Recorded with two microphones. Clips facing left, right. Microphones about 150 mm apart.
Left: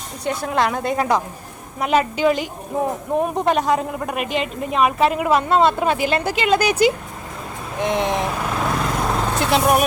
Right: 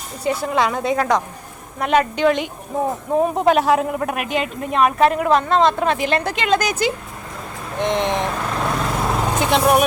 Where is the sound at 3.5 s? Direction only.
Centre (ahead or behind).